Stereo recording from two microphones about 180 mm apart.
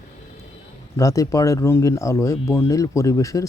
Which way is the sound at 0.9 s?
20° left (ahead or behind).